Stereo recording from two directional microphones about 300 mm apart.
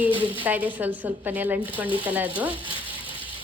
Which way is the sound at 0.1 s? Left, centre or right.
Centre.